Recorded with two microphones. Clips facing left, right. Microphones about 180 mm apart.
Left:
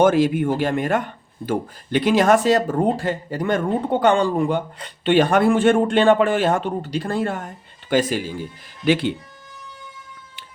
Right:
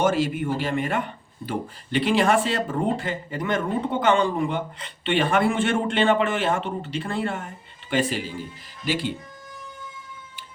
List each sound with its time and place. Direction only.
0.0 s speech: 55° left (ahead or behind)
8.8 s speech: 65° left (ahead or behind)